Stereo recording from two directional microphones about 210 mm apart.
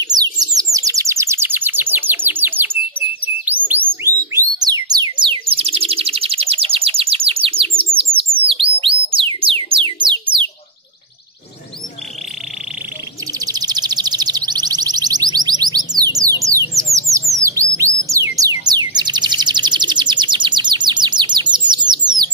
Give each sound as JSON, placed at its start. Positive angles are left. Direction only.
{"t": 0.0, "sound": "bird", "side_deg": -20}
{"t": 13.5, "sound": "music", "side_deg": -20}
{"t": 17.3, "sound": "bird", "side_deg": -15}
{"t": 18.1, "sound": "music", "side_deg": -15}